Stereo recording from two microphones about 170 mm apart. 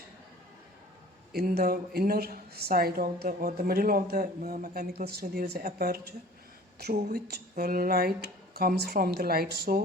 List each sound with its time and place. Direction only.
1.3 s a woman's voice: 65° right (ahead or behind)
7.5 s speech: 55° right (ahead or behind)